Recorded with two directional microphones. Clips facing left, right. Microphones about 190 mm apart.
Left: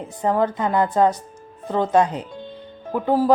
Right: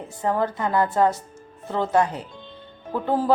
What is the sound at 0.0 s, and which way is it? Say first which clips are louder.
A woman's voice: left 3 dB; 20° left (ahead or behind).